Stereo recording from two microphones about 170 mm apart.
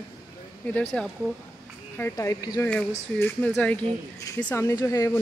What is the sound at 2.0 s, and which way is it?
Speech, 15° left (ahead or behind).